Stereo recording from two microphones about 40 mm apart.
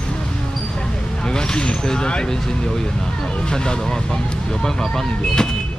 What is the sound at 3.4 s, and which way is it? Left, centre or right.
Speech, centre.